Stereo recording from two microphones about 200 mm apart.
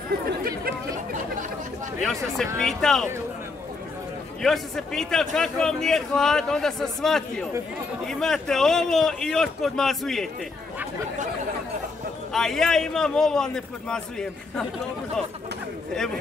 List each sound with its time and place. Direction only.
0.4 s speech: 45° right (ahead or behind)
2.0 s a man's voice: centre (ahead or behind)
4.4 s a man's voice: centre (ahead or behind)
12.3 s a man's voice: centre (ahead or behind)